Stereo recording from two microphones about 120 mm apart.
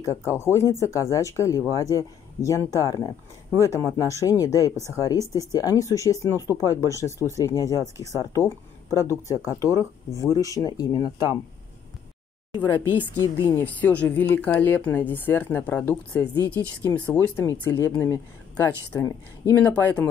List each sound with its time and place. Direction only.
0.0 s speech: 25° left (ahead or behind)
12.6 s speech: 15° left (ahead or behind)
13.2 s speech: 30° left (ahead or behind)
13.7 s speech: 15° left (ahead or behind)